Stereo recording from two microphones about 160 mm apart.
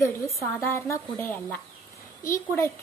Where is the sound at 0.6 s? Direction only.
15° left (ahead or behind).